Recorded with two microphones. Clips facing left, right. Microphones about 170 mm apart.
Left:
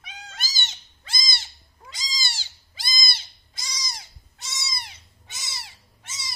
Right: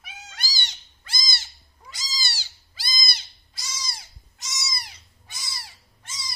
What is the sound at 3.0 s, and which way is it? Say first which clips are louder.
Cat: left 1 dB; 20° left (ahead or behind).